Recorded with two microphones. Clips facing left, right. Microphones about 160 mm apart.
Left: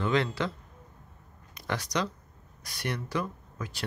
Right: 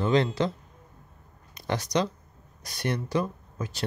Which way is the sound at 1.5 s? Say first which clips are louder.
Right 4 dB; 25° right (ahead or behind).